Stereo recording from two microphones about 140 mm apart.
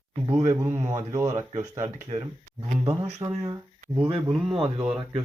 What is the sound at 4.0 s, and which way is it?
Speech, 40° right (ahead or behind).